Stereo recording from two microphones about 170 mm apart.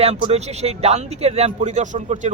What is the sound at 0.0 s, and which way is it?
Speech, 40° right (ahead or behind).